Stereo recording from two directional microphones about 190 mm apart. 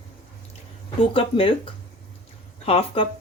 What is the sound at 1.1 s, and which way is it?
Speech, 30° left (ahead or behind).